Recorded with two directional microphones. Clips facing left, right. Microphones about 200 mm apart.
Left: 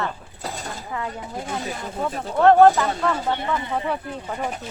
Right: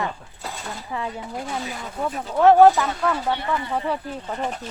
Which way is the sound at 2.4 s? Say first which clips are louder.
Even; 5° right (ahead or behind).